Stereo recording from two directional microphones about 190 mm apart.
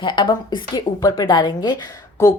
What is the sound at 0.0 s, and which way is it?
A woman's voice, 25° left (ahead or behind).